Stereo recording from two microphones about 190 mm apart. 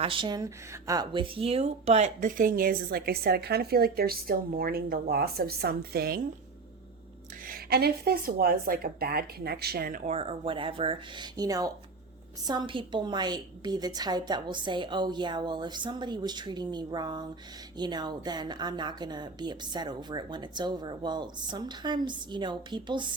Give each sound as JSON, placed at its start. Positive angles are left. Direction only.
{"t": 0.0, "sound": "speech", "side_deg": -25}
{"t": 7.4, "sound": "speech", "side_deg": -50}
{"t": 10.1, "sound": "a woman's voice", "side_deg": -30}